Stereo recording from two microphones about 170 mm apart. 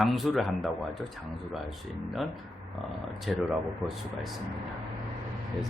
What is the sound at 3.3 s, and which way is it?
Speech, centre (ahead or behind).